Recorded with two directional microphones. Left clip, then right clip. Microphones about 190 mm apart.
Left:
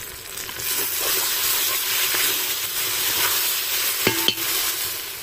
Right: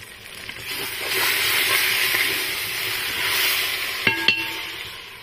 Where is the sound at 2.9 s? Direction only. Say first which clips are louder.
Left 1 dB; 20° left (ahead or behind).